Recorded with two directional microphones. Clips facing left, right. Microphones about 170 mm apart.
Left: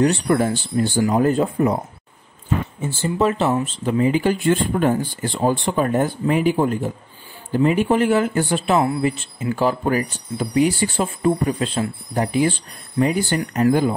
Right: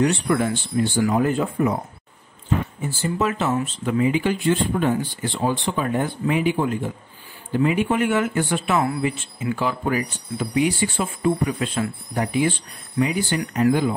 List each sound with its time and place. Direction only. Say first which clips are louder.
0.0 s speech: left 3 dB; 40° left (ahead or behind)
2.8 s speech: left 3 dB; 30° left (ahead or behind)